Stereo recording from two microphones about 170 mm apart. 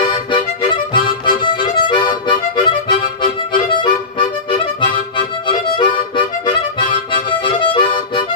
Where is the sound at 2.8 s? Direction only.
30° left (ahead or behind).